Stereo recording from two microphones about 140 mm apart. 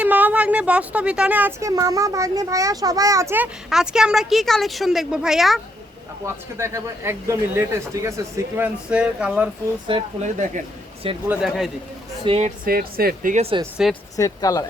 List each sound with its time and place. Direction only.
0.0 s speech: 10° right (ahead or behind)
3.7 s a woman's voice: 5° right (ahead or behind)
6.2 s speech: 20° right (ahead or behind)
9.9 s speech: 35° right (ahead or behind)
11.0 s speech: 45° right (ahead or behind)
11.4 s a woman's voice: centre (ahead or behind)
12.2 s speech: 45° right (ahead or behind)
12.5 s speech: 90° right
13.8 s a woman's voice: 5° right (ahead or behind)
14.2 s speech: 25° left (ahead or behind)